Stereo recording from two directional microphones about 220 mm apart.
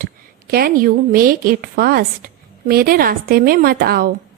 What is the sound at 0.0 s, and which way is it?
A woman's voice, 45° right (ahead or behind).